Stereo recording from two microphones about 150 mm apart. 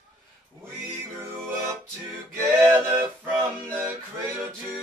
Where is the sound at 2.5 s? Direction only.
15° right (ahead or behind).